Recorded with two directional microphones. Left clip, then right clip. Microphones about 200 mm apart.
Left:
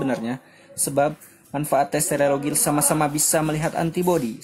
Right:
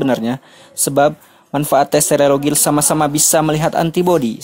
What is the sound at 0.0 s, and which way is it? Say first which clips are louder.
Speech: right 8 dB; 35° right (ahead or behind).